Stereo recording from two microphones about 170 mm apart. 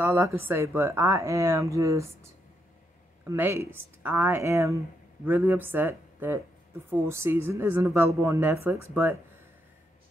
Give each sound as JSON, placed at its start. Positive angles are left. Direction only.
{"t": 0.0, "sound": "speech", "side_deg": -15}
{"t": 3.3, "sound": "speech", "side_deg": -15}